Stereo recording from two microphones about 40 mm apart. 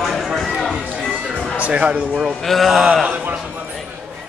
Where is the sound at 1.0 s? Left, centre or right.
Left.